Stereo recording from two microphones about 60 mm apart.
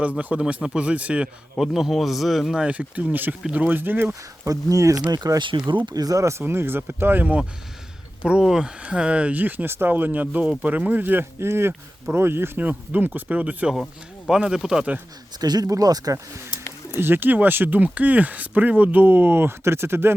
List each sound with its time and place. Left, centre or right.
0.0 s speech: right
0.4 s speech: centre
1.5 s a man's voice: centre
2.6 s speech: right
4.4 s speech: right
5.2 s speech: right
6.4 s speech: right
8.2 s speech: centre; by 12.5 s right
12.5 s speech: right
14.3 s speech: centre
15.4 s speech: right
17.0 s speech: right